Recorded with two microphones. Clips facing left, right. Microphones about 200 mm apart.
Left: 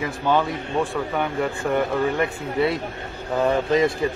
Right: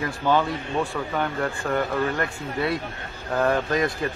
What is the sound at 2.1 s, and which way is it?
Speech, 25° left (ahead or behind).